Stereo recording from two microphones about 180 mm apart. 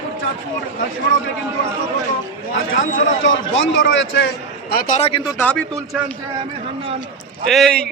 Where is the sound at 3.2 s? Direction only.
90° left.